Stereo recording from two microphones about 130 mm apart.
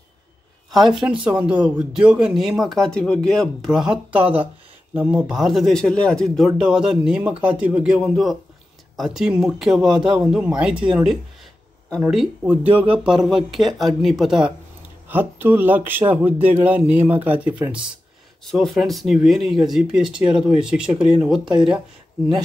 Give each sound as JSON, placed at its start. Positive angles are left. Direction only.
{"t": 1.0, "sound": "speech", "side_deg": -15}
{"t": 12.7, "sound": "speech", "side_deg": -10}
{"t": 15.0, "sound": "speech", "side_deg": -15}
{"t": 18.4, "sound": "speech", "side_deg": 0}